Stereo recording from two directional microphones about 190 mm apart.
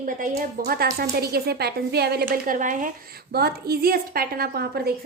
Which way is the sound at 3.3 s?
55° right (ahead or behind).